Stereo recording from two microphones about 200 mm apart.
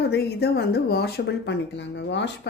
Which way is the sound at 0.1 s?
50° left (ahead or behind).